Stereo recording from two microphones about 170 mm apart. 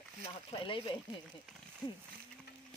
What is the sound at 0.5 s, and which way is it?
Speech, 30° left (ahead or behind).